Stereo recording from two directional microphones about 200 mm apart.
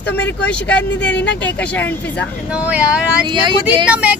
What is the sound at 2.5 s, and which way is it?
Speech, 5° right (ahead or behind).